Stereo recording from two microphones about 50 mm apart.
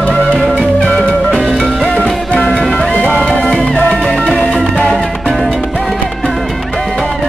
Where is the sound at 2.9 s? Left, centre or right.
Left.